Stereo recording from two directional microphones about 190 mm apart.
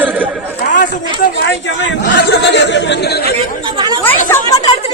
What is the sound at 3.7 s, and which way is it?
Chatter, 20° right (ahead or behind).